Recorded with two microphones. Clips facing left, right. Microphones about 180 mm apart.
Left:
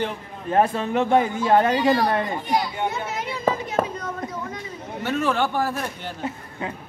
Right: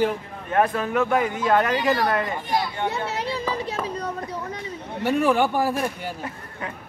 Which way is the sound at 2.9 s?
35° right (ahead or behind).